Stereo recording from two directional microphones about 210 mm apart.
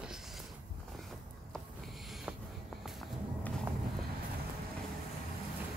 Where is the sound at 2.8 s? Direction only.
Centre (ahead or behind).